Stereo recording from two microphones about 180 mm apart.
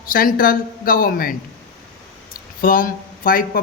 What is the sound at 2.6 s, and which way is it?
Speech, 50° left (ahead or behind).